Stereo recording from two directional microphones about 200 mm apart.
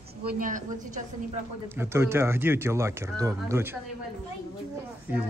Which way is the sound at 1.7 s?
15° right (ahead or behind).